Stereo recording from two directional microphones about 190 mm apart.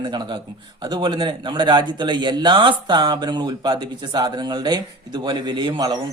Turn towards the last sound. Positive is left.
turn(degrees=-25)  # may be behind; listen again after turning